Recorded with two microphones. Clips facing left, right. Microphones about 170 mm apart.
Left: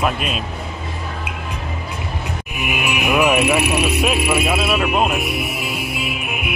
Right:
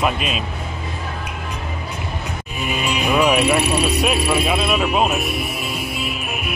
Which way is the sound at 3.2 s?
5° left (ahead or behind).